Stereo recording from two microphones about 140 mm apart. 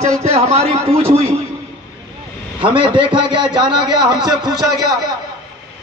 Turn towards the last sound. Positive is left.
turn(degrees=-30)  # may be behind; listen again after turning